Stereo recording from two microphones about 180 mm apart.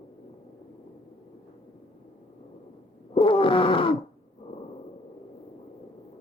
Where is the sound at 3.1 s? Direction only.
30° left (ahead or behind).